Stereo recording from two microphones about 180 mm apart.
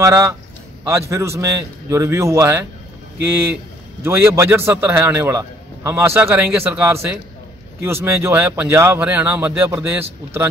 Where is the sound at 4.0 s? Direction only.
15° right (ahead or behind).